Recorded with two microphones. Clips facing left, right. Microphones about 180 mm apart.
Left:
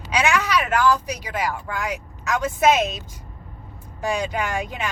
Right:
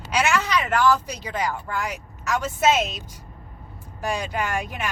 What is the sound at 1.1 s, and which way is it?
A woman's voice, 10° left (ahead or behind).